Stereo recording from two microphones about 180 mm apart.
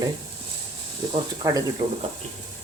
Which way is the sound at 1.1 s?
20° right (ahead or behind).